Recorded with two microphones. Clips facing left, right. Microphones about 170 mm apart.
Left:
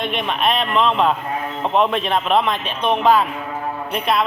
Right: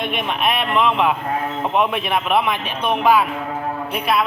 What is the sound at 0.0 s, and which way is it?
A man's voice, 10° right (ahead or behind).